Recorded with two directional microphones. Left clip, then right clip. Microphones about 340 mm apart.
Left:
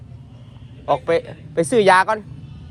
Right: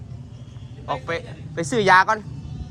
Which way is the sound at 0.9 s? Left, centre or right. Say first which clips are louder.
Left 8 dB; centre.